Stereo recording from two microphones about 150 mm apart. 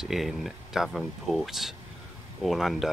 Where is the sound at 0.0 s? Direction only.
Centre (ahead or behind).